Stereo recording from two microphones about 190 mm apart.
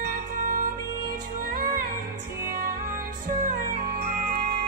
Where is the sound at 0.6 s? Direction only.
50° right (ahead or behind).